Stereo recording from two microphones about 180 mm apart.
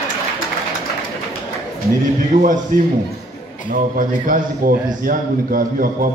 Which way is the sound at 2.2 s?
50° right (ahead or behind).